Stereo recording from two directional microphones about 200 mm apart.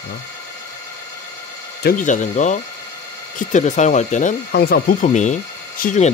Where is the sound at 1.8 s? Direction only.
45° left (ahead or behind).